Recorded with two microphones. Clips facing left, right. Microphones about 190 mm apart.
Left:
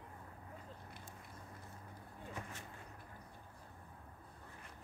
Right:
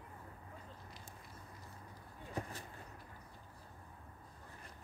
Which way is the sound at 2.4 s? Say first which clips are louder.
Right 7 dB; 35° right (ahead or behind).